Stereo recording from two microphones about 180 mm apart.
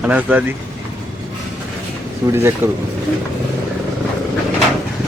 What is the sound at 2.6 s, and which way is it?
Speech, 15° right (ahead or behind).